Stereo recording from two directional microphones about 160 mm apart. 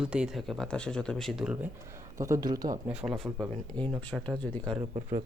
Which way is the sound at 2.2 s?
20° right (ahead or behind).